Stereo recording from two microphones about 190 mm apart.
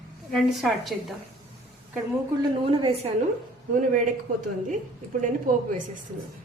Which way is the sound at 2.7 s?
30° right (ahead or behind).